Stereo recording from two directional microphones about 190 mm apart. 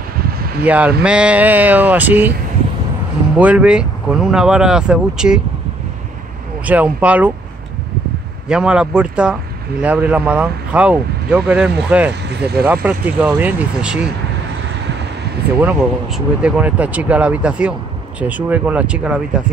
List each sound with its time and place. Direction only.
0.7 s speech: 5° right (ahead or behind)
3.3 s speech: 5° right (ahead or behind)
6.6 s speech: 10° right (ahead or behind)
8.5 s speech: 5° right (ahead or behind)
12.3 s speech: 60° right (ahead or behind)
12.6 s speech: 10° right (ahead or behind)
15.6 s speech: 5° right (ahead or behind)